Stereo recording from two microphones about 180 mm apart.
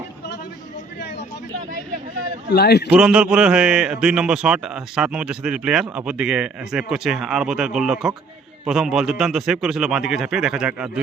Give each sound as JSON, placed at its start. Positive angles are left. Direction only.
{"t": 2.5, "sound": "a man's voice", "side_deg": 65}
{"t": 2.9, "sound": "a man's voice", "side_deg": -5}